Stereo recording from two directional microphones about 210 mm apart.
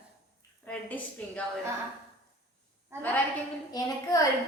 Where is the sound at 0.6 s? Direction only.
5° left (ahead or behind).